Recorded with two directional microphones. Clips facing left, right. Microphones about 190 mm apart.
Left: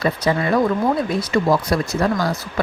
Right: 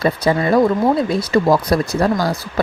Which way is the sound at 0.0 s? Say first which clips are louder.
Right 3 dB; 30° right (ahead or behind).